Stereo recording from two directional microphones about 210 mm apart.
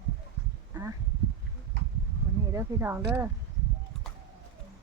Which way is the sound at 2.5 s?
10° right (ahead or behind).